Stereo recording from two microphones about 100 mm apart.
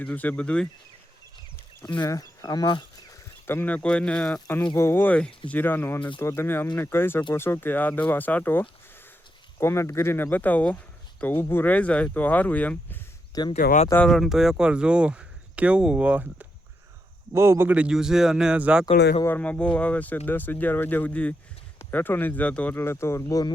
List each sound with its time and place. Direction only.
0.0 s speech: 15° left (ahead or behind)
1.8 s speech: 45° left (ahead or behind)
2.0 s speech: 35° left (ahead or behind)
3.4 s speech: 20° left (ahead or behind)
3.8 s speech: 10° left (ahead or behind)
4.4 s speech: 20° left (ahead or behind)
13.3 s speech: 40° left (ahead or behind)
14.0 s speech: centre (ahead or behind); by 16.5 s 15° right (ahead or behind)
17.3 s speech: 25° right (ahead or behind)
17.7 s speech: 10° right (ahead or behind)
19.3 s speech: 15° left (ahead or behind)